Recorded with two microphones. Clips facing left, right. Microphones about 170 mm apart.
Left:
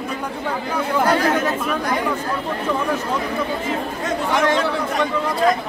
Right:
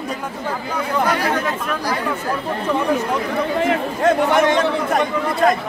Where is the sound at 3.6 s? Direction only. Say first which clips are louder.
Right 6 dB; 65° right (ahead or behind).